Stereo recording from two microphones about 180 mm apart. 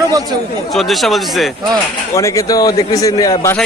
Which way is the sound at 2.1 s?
15° left (ahead or behind).